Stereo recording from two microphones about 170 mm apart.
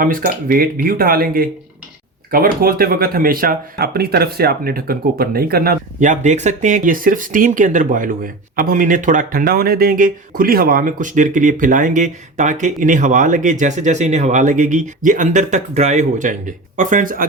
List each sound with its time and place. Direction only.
0.0 s speech: 55° right (ahead or behind)